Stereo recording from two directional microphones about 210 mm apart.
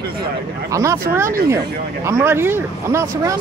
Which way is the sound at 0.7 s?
15° right (ahead or behind).